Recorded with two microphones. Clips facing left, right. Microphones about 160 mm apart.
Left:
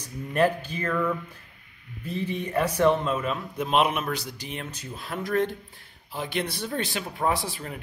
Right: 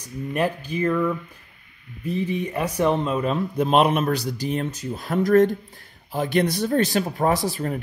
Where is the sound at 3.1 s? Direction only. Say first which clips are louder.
Right 5 dB; 35° right (ahead or behind).